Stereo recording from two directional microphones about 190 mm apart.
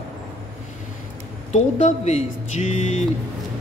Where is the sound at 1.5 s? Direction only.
35° left (ahead or behind).